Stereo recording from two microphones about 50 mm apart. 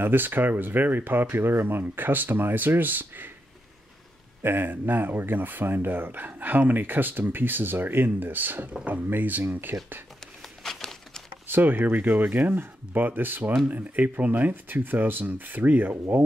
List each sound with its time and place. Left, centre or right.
0.0 s speech: right
4.4 s speech: right
10.6 s a sound: centre
11.4 s speech: right